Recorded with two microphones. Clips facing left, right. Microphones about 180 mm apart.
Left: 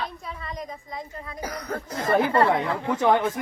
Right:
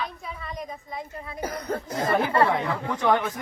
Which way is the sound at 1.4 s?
25° right (ahead or behind).